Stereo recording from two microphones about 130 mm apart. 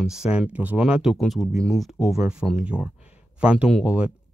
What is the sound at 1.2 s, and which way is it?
Speech, 5° left (ahead or behind).